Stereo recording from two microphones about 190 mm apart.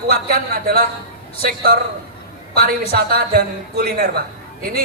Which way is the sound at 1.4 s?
50° right (ahead or behind).